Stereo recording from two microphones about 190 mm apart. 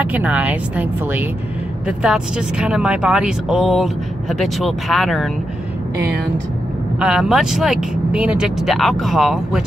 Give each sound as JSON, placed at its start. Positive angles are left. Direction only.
{"t": 0.0, "sound": "a woman's voice", "side_deg": -10}
{"t": 5.9, "sound": "speech", "side_deg": -60}
{"t": 7.0, "sound": "speech", "side_deg": -5}